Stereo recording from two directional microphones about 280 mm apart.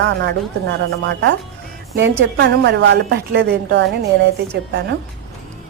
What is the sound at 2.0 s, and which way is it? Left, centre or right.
A woman's voice, right.